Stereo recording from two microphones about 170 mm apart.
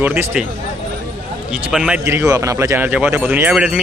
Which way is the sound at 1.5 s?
5° right (ahead or behind).